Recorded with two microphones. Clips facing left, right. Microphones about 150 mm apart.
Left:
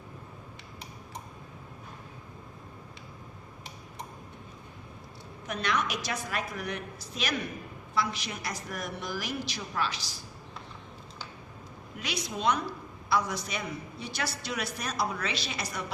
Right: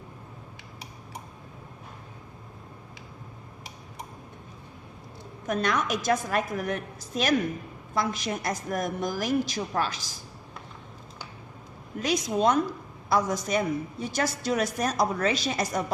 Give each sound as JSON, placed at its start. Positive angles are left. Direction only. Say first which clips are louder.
{"t": 5.5, "sound": "a woman's voice", "louder": "right 5 dB", "side_deg": -45}
{"t": 11.9, "sound": "a woman's voice", "louder": "right 10 dB", "side_deg": -45}